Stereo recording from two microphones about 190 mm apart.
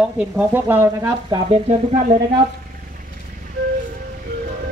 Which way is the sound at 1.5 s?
30° right (ahead or behind).